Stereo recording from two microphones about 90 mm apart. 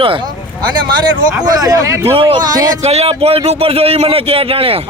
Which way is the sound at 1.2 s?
45° right (ahead or behind).